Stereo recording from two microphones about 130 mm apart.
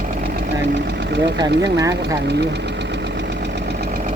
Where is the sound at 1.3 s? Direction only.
30° right (ahead or behind).